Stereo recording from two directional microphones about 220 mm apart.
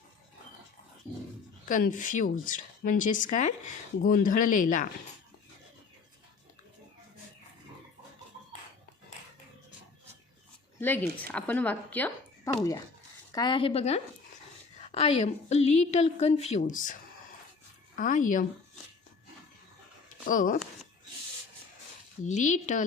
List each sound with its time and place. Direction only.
1.6 s a woman's voice: 35° left (ahead or behind)
10.8 s a woman's voice: 10° left (ahead or behind); by 16.9 s 35° left (ahead or behind)
17.9 s a woman's voice: 35° left (ahead or behind)
20.2 s a woman's voice: 40° left (ahead or behind)
22.2 s a woman's voice: 35° left (ahead or behind)